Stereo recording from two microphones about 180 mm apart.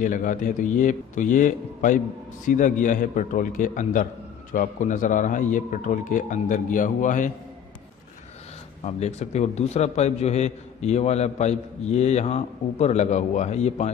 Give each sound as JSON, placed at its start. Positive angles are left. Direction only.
{"t": 0.0, "sound": "a man's voice", "side_deg": 45}
{"t": 8.8, "sound": "a man's voice", "side_deg": 35}